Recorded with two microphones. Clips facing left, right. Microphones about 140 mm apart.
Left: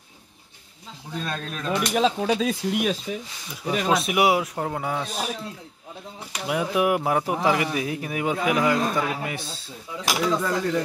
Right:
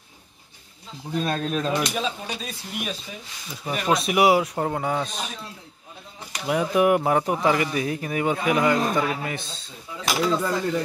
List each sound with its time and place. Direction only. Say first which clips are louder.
1.2 s speech: right 7 dB; 25° right (ahead or behind)
1.7 s speech: left 3 dB; 85° left
3.8 s a man's voice: right 2 dB; centre (ahead or behind)
6.4 s a man's voice: right 3 dB; 5° left (ahead or behind)